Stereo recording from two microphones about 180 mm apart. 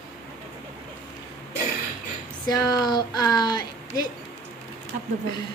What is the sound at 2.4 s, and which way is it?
Speech, 20° left (ahead or behind).